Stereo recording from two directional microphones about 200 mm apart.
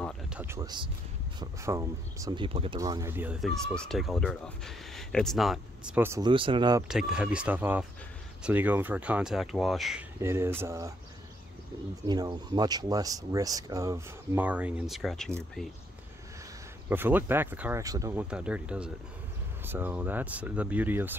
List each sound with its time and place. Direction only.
0.3 s speech: 10° right (ahead or behind)
6.9 s speech: 5° right (ahead or behind)
10.2 s speech: 15° right (ahead or behind)
12.1 s speech: 20° right (ahead or behind); by 15.6 s centre (ahead or behind)
16.9 s speech: 10° right (ahead or behind)
18.3 s speech: 5° right (ahead or behind)